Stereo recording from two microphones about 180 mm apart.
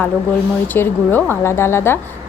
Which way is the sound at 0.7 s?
10° left (ahead or behind).